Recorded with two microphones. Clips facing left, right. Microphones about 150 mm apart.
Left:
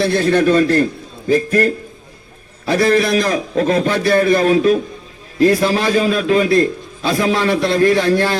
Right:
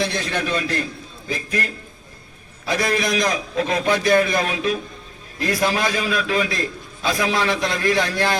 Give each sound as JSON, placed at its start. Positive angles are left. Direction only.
{"t": 0.0, "sound": "a man's voice", "side_deg": 40}
{"t": 2.9, "sound": "a man's voice", "side_deg": 35}